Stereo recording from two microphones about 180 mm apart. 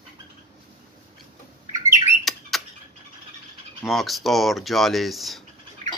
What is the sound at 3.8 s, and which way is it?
Speech, centre (ahead or behind).